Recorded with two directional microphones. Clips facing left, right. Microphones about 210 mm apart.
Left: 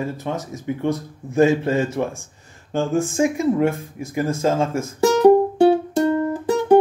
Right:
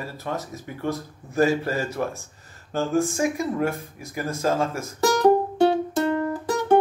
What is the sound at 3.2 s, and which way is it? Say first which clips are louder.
Speech: left 6 dB; 25° left (ahead or behind).